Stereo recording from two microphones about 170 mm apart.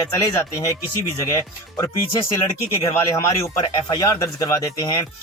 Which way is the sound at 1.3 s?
20° left (ahead or behind).